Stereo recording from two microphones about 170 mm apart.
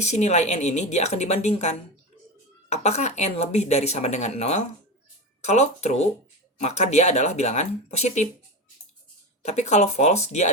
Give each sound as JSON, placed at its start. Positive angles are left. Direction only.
{"t": 0.0, "sound": "speech", "side_deg": 40}
{"t": 9.4, "sound": "speech", "side_deg": 40}